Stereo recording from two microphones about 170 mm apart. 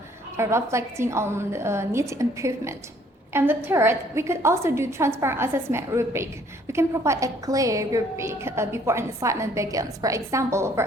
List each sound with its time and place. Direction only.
0.3 s a woman's voice: 15° right (ahead or behind)